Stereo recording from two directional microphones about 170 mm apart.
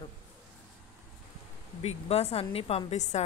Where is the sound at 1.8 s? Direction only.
35° left (ahead or behind).